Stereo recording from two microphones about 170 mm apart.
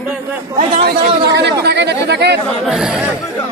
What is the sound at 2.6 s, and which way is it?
Speech, 5° right (ahead or behind).